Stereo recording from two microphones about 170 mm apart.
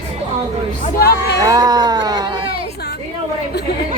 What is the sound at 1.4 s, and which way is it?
Speech, 20° right (ahead or behind).